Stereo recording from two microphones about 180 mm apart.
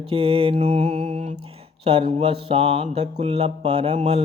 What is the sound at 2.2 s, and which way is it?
Mantra, 30° right (ahead or behind).